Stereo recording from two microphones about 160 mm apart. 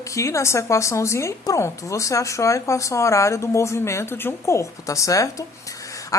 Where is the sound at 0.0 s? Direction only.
20° left (ahead or behind).